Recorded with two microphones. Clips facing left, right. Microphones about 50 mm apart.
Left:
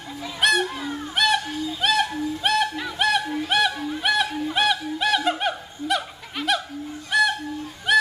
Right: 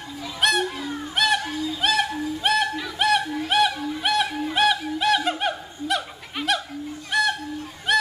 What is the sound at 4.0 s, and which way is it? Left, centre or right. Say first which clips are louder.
Chuckle: left 1 dB; centre.